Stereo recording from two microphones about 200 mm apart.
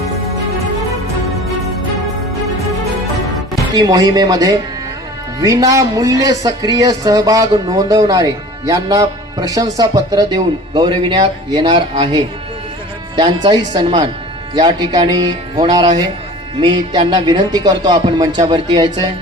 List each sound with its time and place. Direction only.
3.8 s speech: 20° right (ahead or behind)